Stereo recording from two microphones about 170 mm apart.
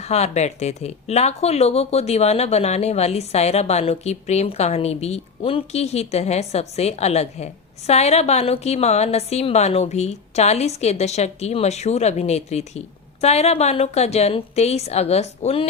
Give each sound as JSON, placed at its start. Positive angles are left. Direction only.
{"t": 0.0, "sound": "speech", "side_deg": 40}